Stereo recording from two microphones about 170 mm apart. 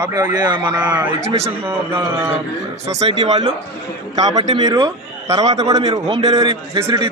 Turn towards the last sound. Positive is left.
turn(degrees=-30)  # may be behind; listen again after turning